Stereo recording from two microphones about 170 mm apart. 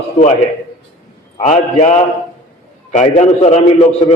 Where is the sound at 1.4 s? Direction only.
45° left (ahead or behind).